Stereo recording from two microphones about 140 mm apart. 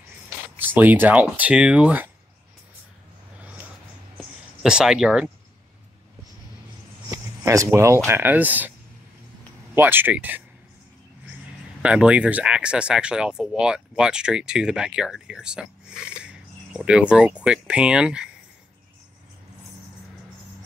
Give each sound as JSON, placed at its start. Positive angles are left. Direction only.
{"t": 0.6, "sound": "speech", "side_deg": -15}
{"t": 4.6, "sound": "speech", "side_deg": -5}
{"t": 7.1, "sound": "speech", "side_deg": -20}
{"t": 9.8, "sound": "speech", "side_deg": -15}
{"t": 11.8, "sound": "speech", "side_deg": -10}